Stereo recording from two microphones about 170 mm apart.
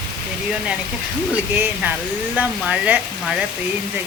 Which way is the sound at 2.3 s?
10° right (ahead or behind).